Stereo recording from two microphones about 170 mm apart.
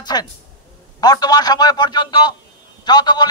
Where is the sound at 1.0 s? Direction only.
25° left (ahead or behind).